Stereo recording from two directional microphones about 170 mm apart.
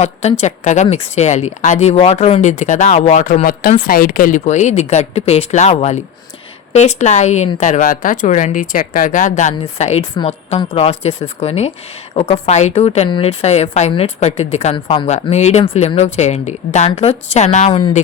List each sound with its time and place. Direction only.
0.0 s a woman's voice: 40° left (ahead or behind)
17.7 s speech: 30° left (ahead or behind)